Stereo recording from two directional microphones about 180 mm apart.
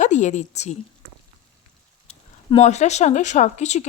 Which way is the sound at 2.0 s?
35° left (ahead or behind).